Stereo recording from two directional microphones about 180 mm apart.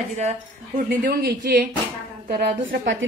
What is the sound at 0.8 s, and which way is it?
A man's voice, 60° right (ahead or behind).